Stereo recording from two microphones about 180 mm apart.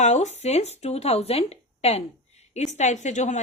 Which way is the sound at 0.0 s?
40° left (ahead or behind).